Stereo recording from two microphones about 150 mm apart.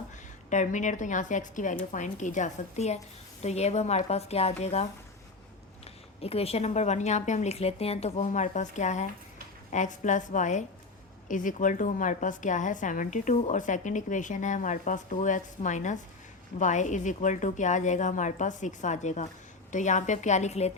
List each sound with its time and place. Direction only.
0.5 s a woman's voice: 55° left (ahead or behind)
6.2 s a woman's voice: 40° left (ahead or behind)